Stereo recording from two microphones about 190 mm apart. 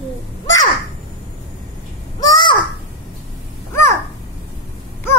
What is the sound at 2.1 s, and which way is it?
Crow, 20° left (ahead or behind).